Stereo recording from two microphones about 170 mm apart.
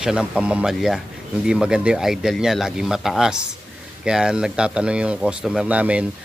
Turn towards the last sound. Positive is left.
turn(degrees=-10)  # may be behind; listen again after turning